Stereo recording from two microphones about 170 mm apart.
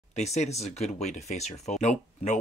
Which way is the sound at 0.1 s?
40° left (ahead or behind).